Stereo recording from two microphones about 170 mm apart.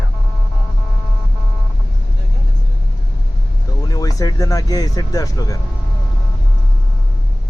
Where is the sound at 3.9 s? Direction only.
20° left (ahead or behind).